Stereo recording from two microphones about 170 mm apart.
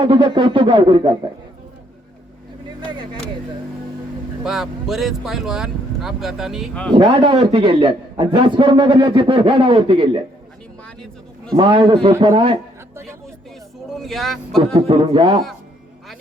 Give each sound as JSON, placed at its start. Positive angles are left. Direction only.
{"t": 0.0, "sound": "a man's voice", "side_deg": -25}
{"t": 4.4, "sound": "speech", "side_deg": 0}
{"t": 6.9, "sound": "a man's voice", "side_deg": -30}
{"t": 11.5, "sound": "a man's voice", "side_deg": -30}
{"t": 13.9, "sound": "speech", "side_deg": 0}
{"t": 14.7, "sound": "a man's voice", "side_deg": -35}